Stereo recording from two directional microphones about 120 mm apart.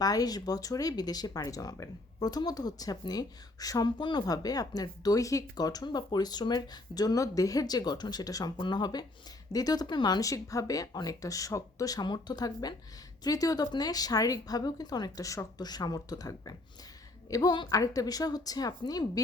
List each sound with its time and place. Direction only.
0.0 s speech: 30° left (ahead or behind)